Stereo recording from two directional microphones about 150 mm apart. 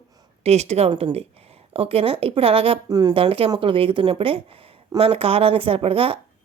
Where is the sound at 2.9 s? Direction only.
25° right (ahead or behind).